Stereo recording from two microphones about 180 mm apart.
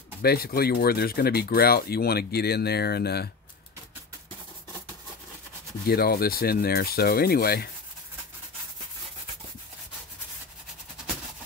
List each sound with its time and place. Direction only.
0.2 s speech: 60° left (ahead or behind)
5.9 s speech: 60° left (ahead or behind)